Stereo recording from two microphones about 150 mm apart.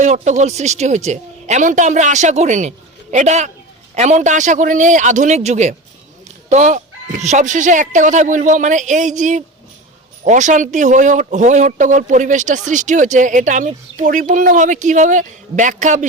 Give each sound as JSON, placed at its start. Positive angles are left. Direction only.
{"t": 0.0, "sound": "a man's voice", "side_deg": -55}